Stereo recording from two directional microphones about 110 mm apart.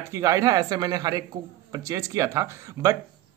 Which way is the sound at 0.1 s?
30° right (ahead or behind).